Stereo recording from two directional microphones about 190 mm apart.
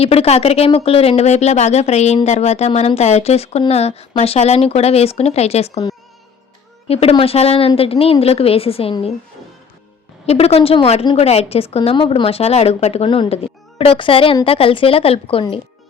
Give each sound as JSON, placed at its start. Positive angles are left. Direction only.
{"t": 0.0, "sound": "speech", "side_deg": 30}
{"t": 6.8, "sound": "speech", "side_deg": 30}
{"t": 10.2, "sound": "speech", "side_deg": 30}